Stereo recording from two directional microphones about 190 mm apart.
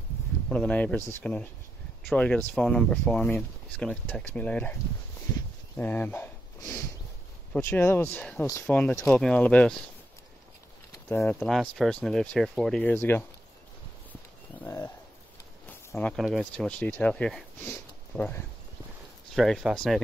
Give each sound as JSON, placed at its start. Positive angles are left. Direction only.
{"t": 0.5, "sound": "speech", "side_deg": 5}
{"t": 5.8, "sound": "a sound", "side_deg": 10}
{"t": 7.5, "sound": "speech", "side_deg": 10}
{"t": 11.1, "sound": "speech", "side_deg": 10}
{"t": 14.6, "sound": "a sound", "side_deg": 15}
{"t": 15.9, "sound": "speech", "side_deg": 5}